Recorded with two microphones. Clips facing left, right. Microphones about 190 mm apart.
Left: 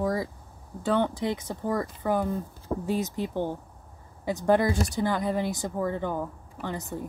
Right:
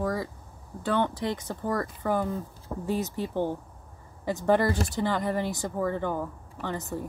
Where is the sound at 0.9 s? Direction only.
15° left (ahead or behind).